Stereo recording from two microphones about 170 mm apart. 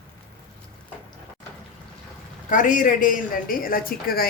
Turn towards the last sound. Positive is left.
turn(degrees=60)  # may be behind; listen again after turning